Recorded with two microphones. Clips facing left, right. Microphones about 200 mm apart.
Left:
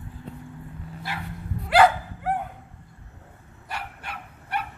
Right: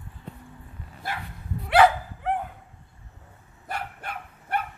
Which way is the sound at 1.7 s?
Centre (ahead or behind).